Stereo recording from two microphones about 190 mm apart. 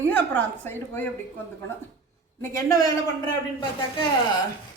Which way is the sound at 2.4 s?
15° left (ahead or behind).